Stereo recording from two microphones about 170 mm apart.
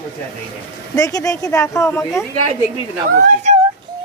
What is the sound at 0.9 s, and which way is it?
Speech, 20° left (ahead or behind).